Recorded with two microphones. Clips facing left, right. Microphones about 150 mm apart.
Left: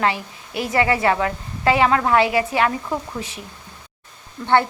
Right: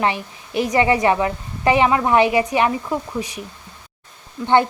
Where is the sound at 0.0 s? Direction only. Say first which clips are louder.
Right 1 dB; 20° right (ahead or behind).